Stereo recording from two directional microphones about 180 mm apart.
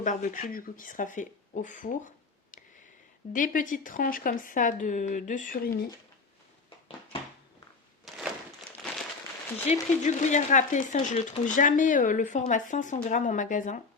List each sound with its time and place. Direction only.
0.0 s speech: 45° left (ahead or behind)
8.1 s a sound: centre (ahead or behind)
9.7 s speech: 35° left (ahead or behind)